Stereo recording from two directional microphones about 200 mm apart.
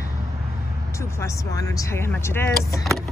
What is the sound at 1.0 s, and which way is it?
Speech, 15° left (ahead or behind).